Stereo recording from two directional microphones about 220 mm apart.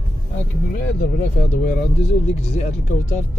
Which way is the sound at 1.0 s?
35° left (ahead or behind).